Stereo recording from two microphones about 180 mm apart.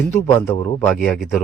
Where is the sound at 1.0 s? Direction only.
5° right (ahead or behind).